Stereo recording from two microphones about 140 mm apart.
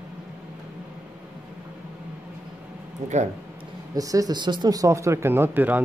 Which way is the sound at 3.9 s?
25° right (ahead or behind).